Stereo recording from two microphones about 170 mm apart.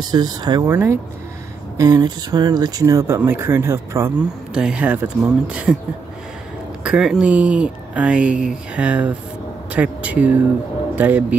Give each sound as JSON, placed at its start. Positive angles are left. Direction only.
{"t": 0.0, "sound": "speech", "side_deg": -25}
{"t": 6.8, "sound": "speech", "side_deg": -5}